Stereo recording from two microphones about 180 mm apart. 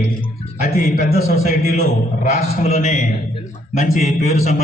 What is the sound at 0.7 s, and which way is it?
Speech, 60° right (ahead or behind).